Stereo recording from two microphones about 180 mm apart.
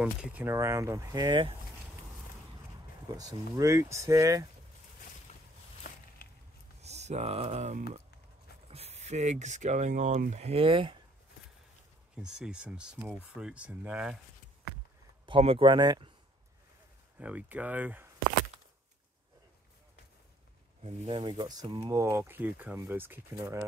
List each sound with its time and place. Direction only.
0.0 s speech: 5° right (ahead or behind); by 1.5 s 25° right (ahead or behind)
3.2 s speech: 20° right (ahead or behind)
6.2 s a sound: 55° left (ahead or behind)
6.8 s speech: 40° right (ahead or behind)
12.2 s speech: 5° right (ahead or behind)
15.2 s speech: 30° right (ahead or behind)
17.2 s speech: 5° right (ahead or behind)
21.1 s speech: 20° right (ahead or behind)